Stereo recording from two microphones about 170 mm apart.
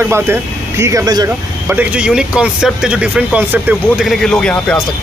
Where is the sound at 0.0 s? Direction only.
15° right (ahead or behind).